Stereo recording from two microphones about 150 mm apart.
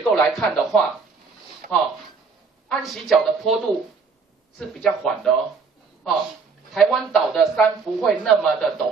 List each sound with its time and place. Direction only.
0.1 s speech: 5° left (ahead or behind)
1.6 s a sound: 60° right (ahead or behind)
2.7 s speech: centre (ahead or behind)
6.7 s speech: centre (ahead or behind)